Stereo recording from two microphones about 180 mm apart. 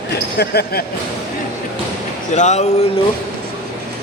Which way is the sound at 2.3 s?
40° left (ahead or behind).